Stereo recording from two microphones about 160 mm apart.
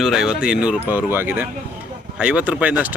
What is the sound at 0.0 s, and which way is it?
Speech, centre (ahead or behind).